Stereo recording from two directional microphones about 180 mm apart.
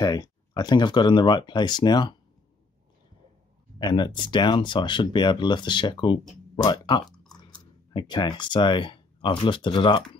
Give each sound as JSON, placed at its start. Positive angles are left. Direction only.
{"t": 0.0, "sound": "speech", "side_deg": 20}
{"t": 3.7, "sound": "speech", "side_deg": 25}